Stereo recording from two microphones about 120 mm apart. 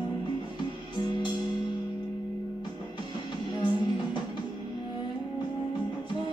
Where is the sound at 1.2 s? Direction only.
35° left (ahead or behind).